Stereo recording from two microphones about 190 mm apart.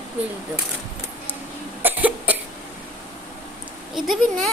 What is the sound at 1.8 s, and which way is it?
Cough, 10° right (ahead or behind).